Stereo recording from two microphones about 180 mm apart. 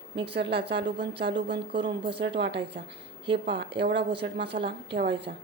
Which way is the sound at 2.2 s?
75° right (ahead or behind).